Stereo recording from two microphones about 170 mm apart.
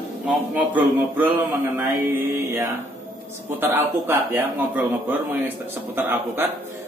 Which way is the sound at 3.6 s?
10° right (ahead or behind).